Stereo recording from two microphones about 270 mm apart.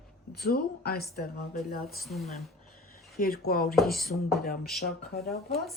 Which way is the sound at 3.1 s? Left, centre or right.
Left.